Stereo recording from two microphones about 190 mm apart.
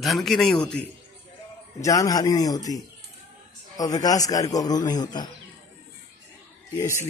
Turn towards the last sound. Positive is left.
turn(degrees=15)  # may be behind; listen again after turning